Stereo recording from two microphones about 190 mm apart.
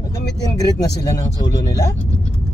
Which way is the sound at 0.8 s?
20° left (ahead or behind).